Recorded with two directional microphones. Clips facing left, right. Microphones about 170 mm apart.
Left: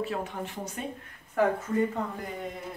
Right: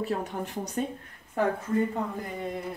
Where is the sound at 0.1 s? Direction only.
40° right (ahead or behind).